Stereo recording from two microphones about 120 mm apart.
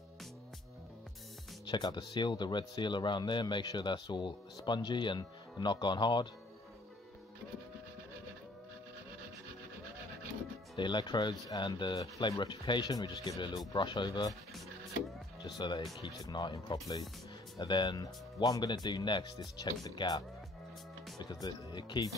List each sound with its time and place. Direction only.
1.7 s speech: 35° left (ahead or behind)
10.8 s speech: 40° left (ahead or behind)
15.6 s speech: 40° left (ahead or behind)